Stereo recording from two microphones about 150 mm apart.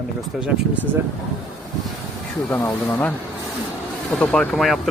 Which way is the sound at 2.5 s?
10° left (ahead or behind).